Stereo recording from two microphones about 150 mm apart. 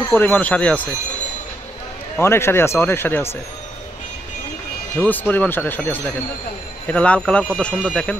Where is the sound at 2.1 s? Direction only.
15° left (ahead or behind).